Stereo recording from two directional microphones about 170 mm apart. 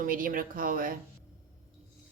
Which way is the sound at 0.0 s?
55° right (ahead or behind).